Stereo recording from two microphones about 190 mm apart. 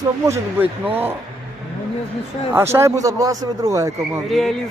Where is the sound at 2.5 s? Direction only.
15° right (ahead or behind).